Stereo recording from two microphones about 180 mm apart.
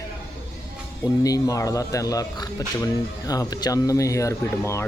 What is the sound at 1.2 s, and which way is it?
Speech, 20° left (ahead or behind).